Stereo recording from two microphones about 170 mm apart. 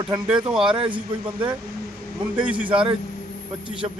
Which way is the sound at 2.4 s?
10° right (ahead or behind).